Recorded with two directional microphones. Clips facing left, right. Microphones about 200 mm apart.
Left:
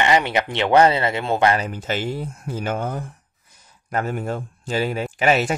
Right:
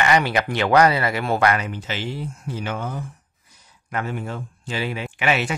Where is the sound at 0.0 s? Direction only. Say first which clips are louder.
Left 1 dB; 20° left (ahead or behind).